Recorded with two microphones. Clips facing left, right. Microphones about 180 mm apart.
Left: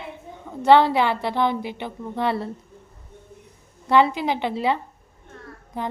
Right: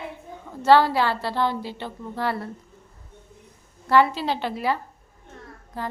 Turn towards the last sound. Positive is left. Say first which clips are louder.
# left 3 dB
turn(degrees=20)  # may be behind; listen again after turning